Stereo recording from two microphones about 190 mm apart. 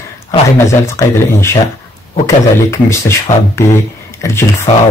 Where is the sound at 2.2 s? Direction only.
15° left (ahead or behind).